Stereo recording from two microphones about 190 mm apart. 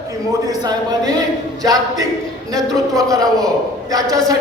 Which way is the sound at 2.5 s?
20° right (ahead or behind).